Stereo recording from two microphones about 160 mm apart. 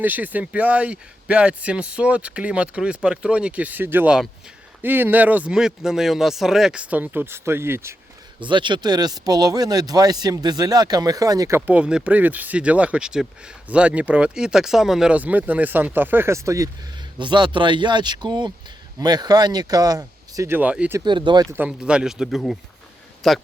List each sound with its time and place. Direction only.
0.0 s speech: 10° right (ahead or behind)
8.4 s speech: 30° right (ahead or behind)
17.2 s speech: 30° right (ahead or behind); by 21.0 s 10° right (ahead or behind)
21.0 s speech: 30° right (ahead or behind)
21.5 s speech: 10° right (ahead or behind)